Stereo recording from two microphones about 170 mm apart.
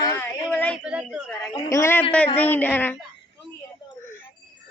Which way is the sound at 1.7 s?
15° left (ahead or behind).